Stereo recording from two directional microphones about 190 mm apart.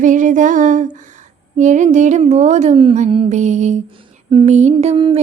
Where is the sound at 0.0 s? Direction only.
40° right (ahead or behind).